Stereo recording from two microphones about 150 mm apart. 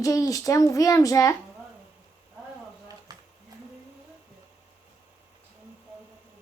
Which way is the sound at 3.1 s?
25° right (ahead or behind).